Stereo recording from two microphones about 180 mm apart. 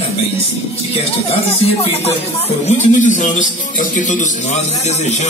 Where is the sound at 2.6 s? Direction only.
40° left (ahead or behind).